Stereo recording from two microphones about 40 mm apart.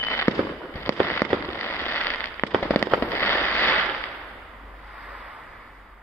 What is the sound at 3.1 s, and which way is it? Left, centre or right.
Fireworks, left.